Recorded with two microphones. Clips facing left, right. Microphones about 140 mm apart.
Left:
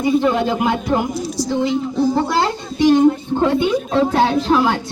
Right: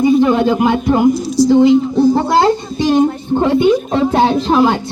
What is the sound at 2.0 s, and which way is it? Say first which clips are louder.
Speech: right 5 dB; 35° right (ahead or behind).